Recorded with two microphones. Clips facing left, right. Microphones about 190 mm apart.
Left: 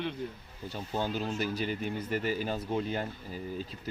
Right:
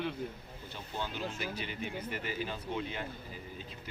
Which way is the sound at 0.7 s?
40° left (ahead or behind).